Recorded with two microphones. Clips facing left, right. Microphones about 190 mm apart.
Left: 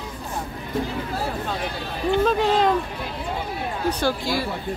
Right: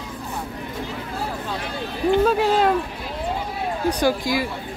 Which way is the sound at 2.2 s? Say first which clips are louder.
Left 1 dB; 5° right (ahead or behind).